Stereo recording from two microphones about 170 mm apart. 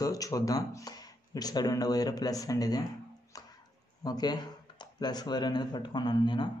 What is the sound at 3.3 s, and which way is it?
Dog, 20° left (ahead or behind).